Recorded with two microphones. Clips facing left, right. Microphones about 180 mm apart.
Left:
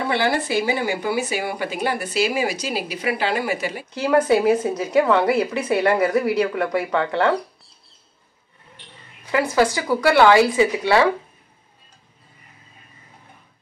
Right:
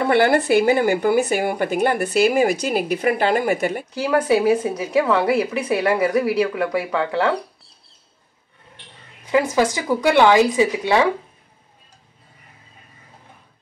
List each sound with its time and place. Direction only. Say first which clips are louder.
0.1 s speech: right 6 dB; 55° right (ahead or behind)
3.9 s speech: left 2 dB; 5° right (ahead or behind)
9.3 s speech: right 1 dB; 20° right (ahead or behind)